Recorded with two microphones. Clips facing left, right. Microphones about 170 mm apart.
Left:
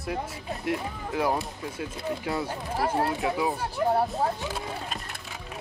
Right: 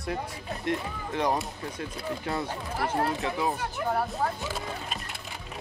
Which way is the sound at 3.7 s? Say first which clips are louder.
Left 4 dB; 30° left (ahead or behind).